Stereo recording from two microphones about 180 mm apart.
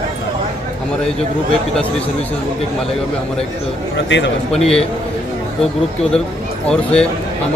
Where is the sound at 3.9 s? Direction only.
80° left.